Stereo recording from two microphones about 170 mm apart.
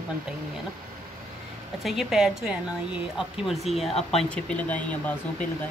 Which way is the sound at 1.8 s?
Centre (ahead or behind).